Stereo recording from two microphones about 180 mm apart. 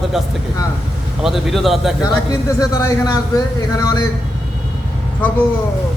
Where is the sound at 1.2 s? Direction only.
Centre (ahead or behind).